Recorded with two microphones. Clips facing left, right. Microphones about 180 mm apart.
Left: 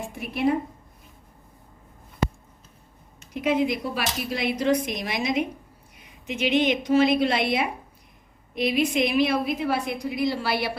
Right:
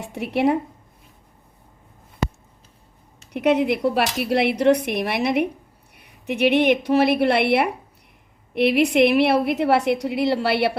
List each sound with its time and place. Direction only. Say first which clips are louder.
0.0 s a woman's voice: right 4 dB; 70° right (ahead or behind)
3.3 s a woman's voice: right 4 dB; 70° right (ahead or behind)